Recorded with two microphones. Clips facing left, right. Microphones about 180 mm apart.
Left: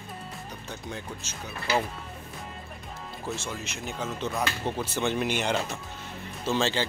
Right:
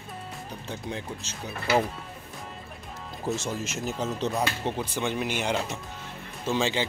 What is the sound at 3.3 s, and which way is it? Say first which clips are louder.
Speech: right 5 dB; 40° right (ahead or behind).